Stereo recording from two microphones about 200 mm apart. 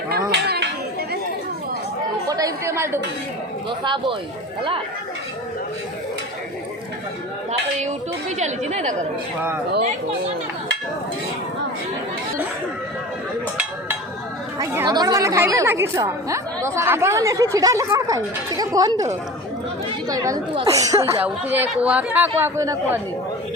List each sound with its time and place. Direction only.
0.1 s a sound: 55° right (ahead or behind)
2.3 s a woman's voice: 15° right (ahead or behind)
8.4 s a woman's voice: 35° right (ahead or behind)
14.6 s a woman's voice: 15° right (ahead or behind)
20.1 s a woman's voice: 15° right (ahead or behind)